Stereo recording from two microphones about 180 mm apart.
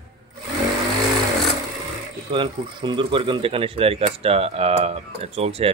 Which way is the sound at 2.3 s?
25° right (ahead or behind).